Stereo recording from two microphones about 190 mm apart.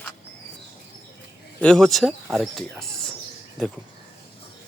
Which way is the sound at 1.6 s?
5° left (ahead or behind).